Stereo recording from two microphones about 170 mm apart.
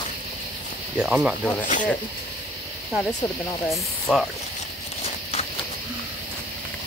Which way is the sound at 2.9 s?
Centre (ahead or behind).